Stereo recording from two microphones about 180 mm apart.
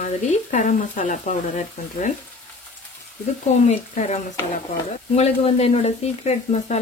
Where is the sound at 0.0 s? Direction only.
45° left (ahead or behind).